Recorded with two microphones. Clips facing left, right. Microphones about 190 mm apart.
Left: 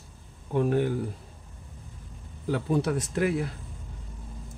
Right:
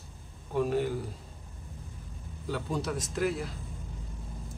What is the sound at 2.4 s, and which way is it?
Speech, 60° left (ahead or behind).